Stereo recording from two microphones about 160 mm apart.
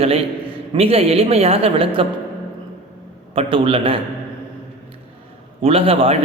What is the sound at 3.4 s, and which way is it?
Speech, 35° right (ahead or behind).